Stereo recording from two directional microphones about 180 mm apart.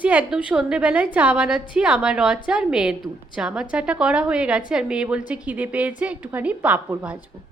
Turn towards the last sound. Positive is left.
turn(degrees=-10)  # may be behind; listen again after turning